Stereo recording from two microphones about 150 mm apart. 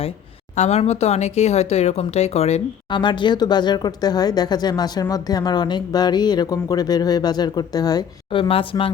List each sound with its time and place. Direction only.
0.5 s speech: 50° left (ahead or behind)
3.0 s speech: 30° left (ahead or behind)